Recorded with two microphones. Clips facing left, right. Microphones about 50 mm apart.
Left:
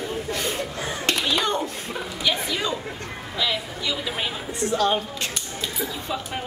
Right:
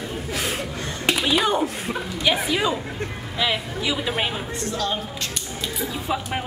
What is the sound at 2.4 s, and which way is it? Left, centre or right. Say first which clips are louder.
Speech: right 4 dB; centre.